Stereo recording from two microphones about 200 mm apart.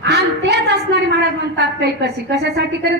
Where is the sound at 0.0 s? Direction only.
55° right (ahead or behind).